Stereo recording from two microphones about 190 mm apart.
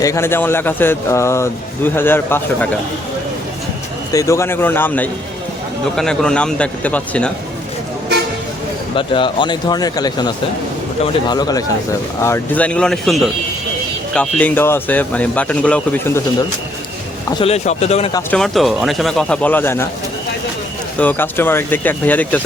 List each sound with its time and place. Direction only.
0.0 s speech: 15° left (ahead or behind)
4.1 s speech: 15° left (ahead or behind)
9.0 s speech: 25° left (ahead or behind); by 16.2 s 10° left (ahead or behind)
17.4 s speech: 35° left (ahead or behind)
18.3 s speech: centre (ahead or behind)
21.0 s speech: 10° left (ahead or behind)